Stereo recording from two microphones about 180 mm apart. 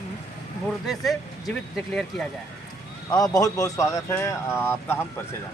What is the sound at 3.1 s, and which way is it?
Speech, 20° left (ahead or behind).